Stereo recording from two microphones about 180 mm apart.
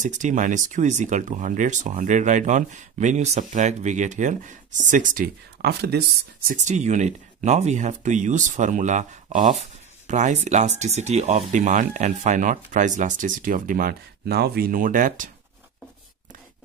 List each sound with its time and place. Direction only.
0.0 s speech: 45° right (ahead or behind); by 6.5 s 65° right (ahead or behind)
6.5 s speech: 40° right (ahead or behind)